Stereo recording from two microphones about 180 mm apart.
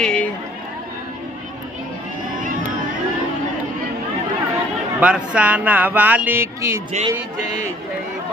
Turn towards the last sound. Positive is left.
turn(degrees=-40)  # may be behind; listen again after turning